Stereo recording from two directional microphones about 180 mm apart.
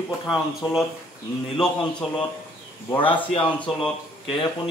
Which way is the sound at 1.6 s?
5° left (ahead or behind).